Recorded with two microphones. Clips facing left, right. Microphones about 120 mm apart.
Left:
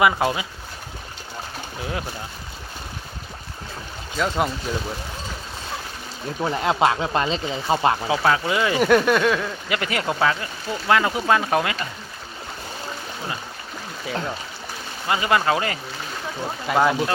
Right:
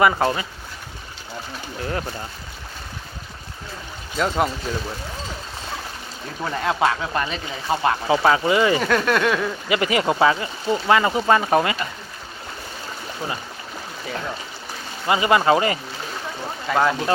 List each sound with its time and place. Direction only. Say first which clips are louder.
0.0 s speech: right 1 dB; 5° left (ahead or behind)
1.8 s speech: right 2 dB; 5° left (ahead or behind)
4.2 s speech: right 1 dB; centre (ahead or behind)
6.4 s speech: left 1 dB; 20° left (ahead or behind)
8.0 s speech: right 3 dB; centre (ahead or behind)
15.0 s speech: right 3 dB; 5° right (ahead or behind)
16.6 s speech: left 1 dB; 10° left (ahead or behind)